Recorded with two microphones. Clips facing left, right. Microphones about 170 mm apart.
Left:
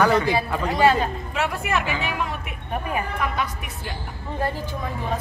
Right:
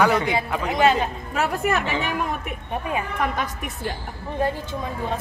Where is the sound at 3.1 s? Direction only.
45° right (ahead or behind).